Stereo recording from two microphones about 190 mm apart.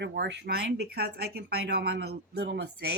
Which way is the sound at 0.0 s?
65° right (ahead or behind).